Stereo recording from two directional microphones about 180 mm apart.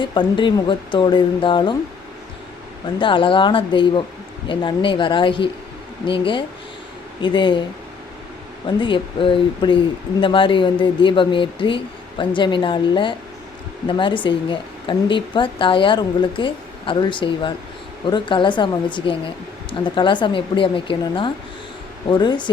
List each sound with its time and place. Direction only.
0.0 s speech: 25° left (ahead or behind)
3.0 s speech: 30° left (ahead or behind)
8.6 s speech: 25° left (ahead or behind)